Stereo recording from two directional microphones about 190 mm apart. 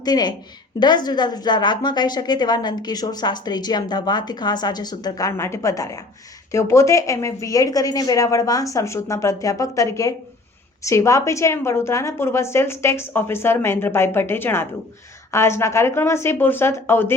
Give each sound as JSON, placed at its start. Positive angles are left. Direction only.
{"t": 0.0, "sound": "a woman's voice", "side_deg": 20}